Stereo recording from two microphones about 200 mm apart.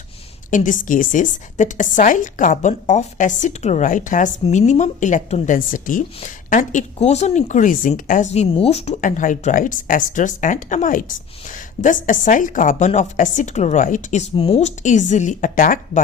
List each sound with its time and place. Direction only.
0.5 s a woman's voice: 40° left (ahead or behind)